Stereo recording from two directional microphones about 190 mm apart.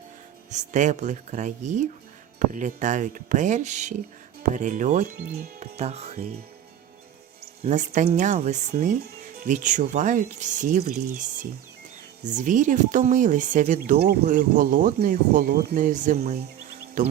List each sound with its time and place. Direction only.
0.5 s speech: 40° right (ahead or behind)
7.6 s speech: 35° right (ahead or behind)
13.9 s speech: 55° right (ahead or behind)
14.3 s speech: 45° right (ahead or behind)